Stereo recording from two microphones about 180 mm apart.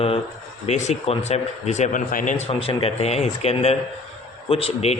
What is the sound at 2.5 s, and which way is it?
A man's voice, 30° left (ahead or behind).